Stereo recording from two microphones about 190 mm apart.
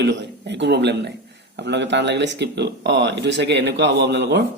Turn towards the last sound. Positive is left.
turn(degrees=-65)  # may be behind; listen again after turning